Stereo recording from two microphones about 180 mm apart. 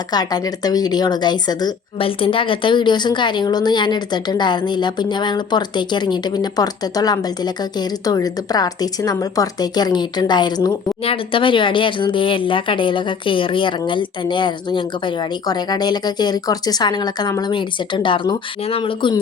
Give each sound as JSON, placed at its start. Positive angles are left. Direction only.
{"t": 0.1, "sound": "speech", "side_deg": 20}